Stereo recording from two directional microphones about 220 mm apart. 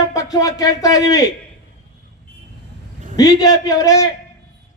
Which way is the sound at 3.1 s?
15° left (ahead or behind).